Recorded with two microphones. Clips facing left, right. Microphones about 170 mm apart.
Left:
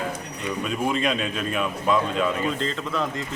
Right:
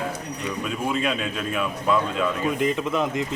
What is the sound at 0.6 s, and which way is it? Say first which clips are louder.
A man's voice: left 1 dB; 5° right (ahead or behind).